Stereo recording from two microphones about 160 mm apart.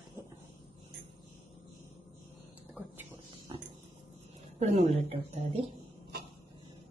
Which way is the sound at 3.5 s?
25° right (ahead or behind).